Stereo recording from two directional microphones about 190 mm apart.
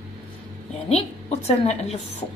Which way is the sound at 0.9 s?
35° left (ahead or behind).